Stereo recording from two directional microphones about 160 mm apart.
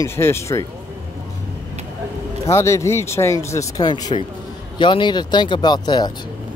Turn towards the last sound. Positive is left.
turn(degrees=25)  # may be behind; listen again after turning